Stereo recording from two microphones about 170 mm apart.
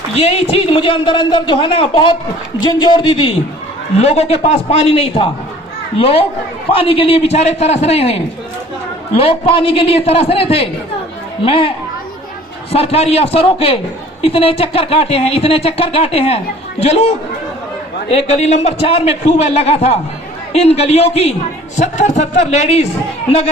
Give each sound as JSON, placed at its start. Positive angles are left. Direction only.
{"t": 0.2, "sound": "a man's voice", "side_deg": 35}
{"t": 12.7, "sound": "a man's voice", "side_deg": 35}